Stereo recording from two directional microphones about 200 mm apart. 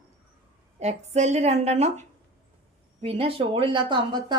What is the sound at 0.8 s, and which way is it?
Speech, 35° right (ahead or behind).